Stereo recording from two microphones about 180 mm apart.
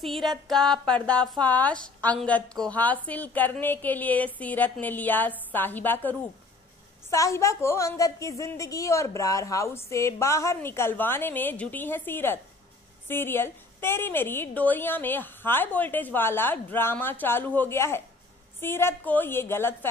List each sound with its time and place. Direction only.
0.0 s a woman's voice: centre (ahead or behind)